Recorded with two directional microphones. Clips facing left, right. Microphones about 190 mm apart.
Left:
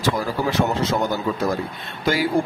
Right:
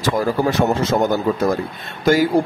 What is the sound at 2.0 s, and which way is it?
Speech, 45° right (ahead or behind).